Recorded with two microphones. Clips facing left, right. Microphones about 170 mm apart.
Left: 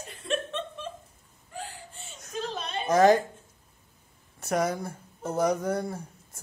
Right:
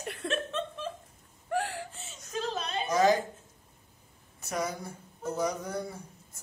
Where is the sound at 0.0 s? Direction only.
70° right (ahead or behind).